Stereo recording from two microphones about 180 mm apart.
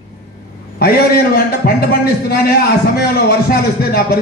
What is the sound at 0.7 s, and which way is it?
A man's voice, 60° left (ahead or behind).